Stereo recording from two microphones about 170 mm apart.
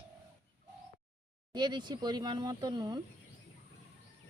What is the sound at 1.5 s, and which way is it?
Speech, 25° right (ahead or behind).